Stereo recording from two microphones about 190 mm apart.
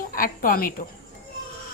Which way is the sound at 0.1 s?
45° left (ahead or behind).